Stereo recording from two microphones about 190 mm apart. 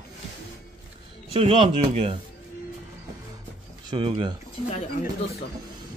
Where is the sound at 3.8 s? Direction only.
25° right (ahead or behind).